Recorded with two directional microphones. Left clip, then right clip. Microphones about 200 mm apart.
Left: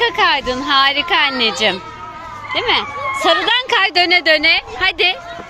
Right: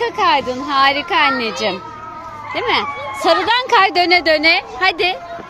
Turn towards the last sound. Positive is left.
turn(degrees=-10)  # may be behind; listen again after turning